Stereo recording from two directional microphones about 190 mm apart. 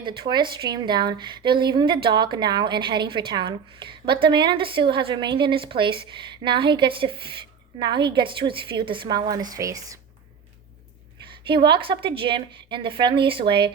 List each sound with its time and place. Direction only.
0.0 s speech: 25° right (ahead or behind)
11.4 s speech: 25° right (ahead or behind)